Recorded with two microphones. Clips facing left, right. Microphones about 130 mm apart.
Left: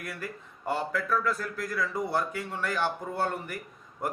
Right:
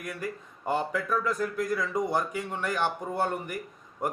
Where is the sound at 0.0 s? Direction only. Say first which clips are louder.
Right 3 dB; 15° right (ahead or behind).